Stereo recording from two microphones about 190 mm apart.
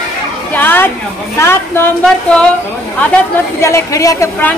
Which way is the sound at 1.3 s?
10° left (ahead or behind).